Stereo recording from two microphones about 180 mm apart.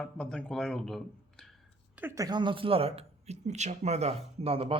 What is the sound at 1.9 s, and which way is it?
Speech, 10° right (ahead or behind).